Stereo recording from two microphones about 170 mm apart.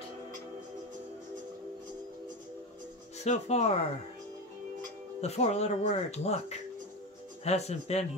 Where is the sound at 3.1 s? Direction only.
40° left (ahead or behind).